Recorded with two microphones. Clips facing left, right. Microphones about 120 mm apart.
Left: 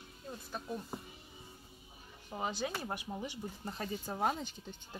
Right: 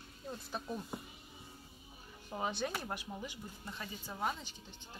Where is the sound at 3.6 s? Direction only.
40° left (ahead or behind).